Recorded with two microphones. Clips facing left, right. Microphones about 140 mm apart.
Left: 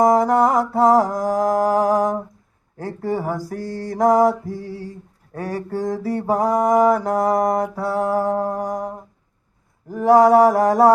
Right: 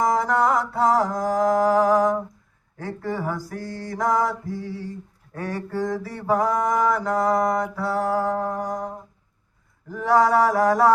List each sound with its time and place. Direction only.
0.0 s mantra: 40° left (ahead or behind)
9.9 s mantra: 40° left (ahead or behind)